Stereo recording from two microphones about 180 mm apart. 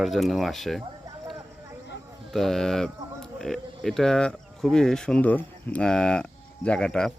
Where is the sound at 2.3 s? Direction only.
Centre (ahead or behind).